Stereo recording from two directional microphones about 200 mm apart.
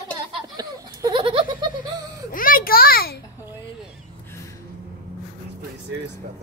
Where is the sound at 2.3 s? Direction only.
45° left (ahead or behind).